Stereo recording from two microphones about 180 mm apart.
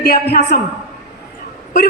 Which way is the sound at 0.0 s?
65° left (ahead or behind).